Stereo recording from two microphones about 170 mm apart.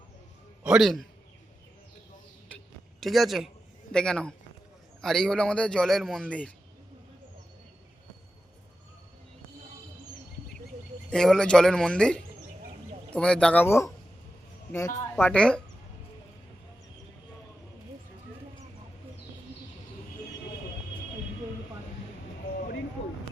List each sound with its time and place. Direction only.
0.6 s a man's voice: 5° right (ahead or behind)
3.0 s a man's voice: centre (ahead or behind)
11.1 s a man's voice: 5° left (ahead or behind)
15.1 s a man's voice: 5° left (ahead or behind)